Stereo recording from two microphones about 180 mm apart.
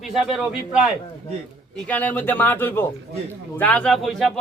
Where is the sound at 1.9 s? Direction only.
10° left (ahead or behind).